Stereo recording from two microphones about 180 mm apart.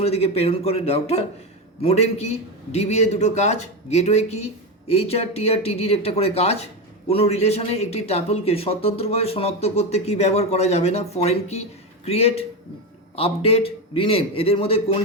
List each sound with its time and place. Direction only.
0.0 s a man's voice: 35° left (ahead or behind)